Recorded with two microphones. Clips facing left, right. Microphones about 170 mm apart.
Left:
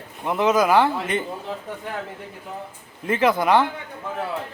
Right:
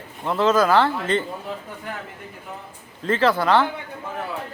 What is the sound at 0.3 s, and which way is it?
Speech, 15° left (ahead or behind).